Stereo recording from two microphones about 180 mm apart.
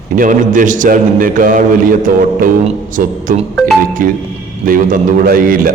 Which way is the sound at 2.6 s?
50° right (ahead or behind).